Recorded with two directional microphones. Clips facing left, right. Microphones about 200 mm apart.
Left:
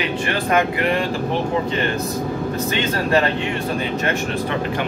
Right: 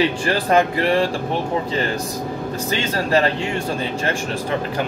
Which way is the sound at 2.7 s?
30° right (ahead or behind).